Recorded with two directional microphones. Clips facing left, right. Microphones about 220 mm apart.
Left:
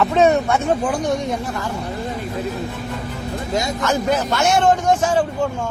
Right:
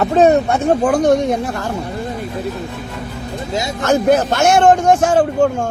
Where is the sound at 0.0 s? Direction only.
35° right (ahead or behind).